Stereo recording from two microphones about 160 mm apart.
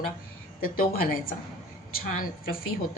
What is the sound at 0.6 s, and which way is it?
A woman's voice, 65° left (ahead or behind).